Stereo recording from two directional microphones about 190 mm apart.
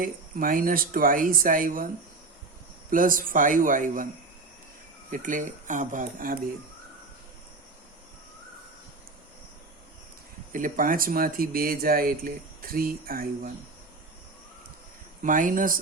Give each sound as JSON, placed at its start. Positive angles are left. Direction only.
{"t": 0.0, "sound": "speech", "side_deg": -50}
{"t": 2.9, "sound": "speech", "side_deg": -45}
{"t": 5.1, "sound": "speech", "side_deg": -45}
{"t": 10.5, "sound": "speech", "side_deg": -45}
{"t": 15.2, "sound": "speech", "side_deg": -45}